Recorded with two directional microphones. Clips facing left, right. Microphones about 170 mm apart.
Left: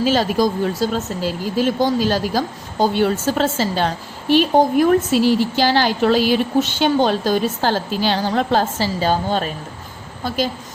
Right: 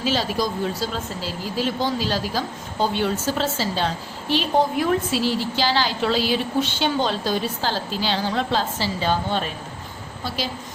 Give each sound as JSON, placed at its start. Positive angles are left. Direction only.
{"t": 0.0, "sound": "a woman's voice", "side_deg": 50}